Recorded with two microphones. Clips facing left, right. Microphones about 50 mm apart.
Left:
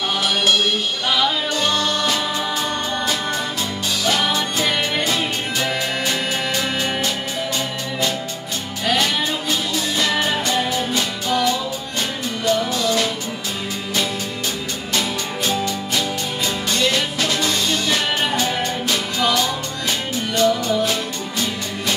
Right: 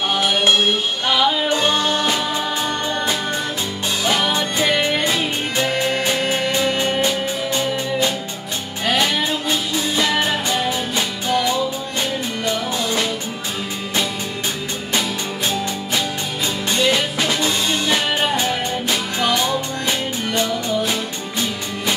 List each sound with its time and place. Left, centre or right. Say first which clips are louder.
0.1 s music: right 2 dB; right
4.0 s music: right 1 dB; centre
12.4 s music: left 4 dB; right
15.4 s music: left 1 dB; right